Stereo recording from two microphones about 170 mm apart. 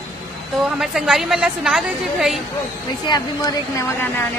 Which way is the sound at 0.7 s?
5° right (ahead or behind).